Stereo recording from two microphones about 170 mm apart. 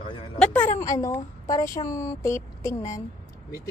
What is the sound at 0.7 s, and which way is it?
Speech, 20° left (ahead or behind).